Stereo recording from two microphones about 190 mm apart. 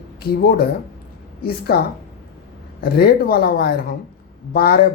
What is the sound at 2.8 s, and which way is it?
Speech, 55° left (ahead or behind).